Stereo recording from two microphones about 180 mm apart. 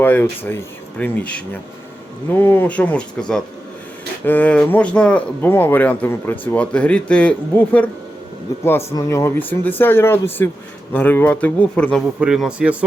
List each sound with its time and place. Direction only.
0.0 s speech: 10° left (ahead or behind)
2.4 s speech: 10° left (ahead or behind)
12.2 s a man's voice: 5° right (ahead or behind)